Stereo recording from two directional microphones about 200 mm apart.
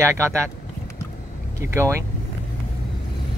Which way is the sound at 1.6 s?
15° right (ahead or behind).